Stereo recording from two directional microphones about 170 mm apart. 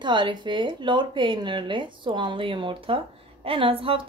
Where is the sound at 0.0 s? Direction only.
25° right (ahead or behind).